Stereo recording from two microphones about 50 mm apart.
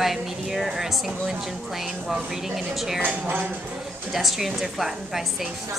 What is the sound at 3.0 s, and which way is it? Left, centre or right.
Speech, right.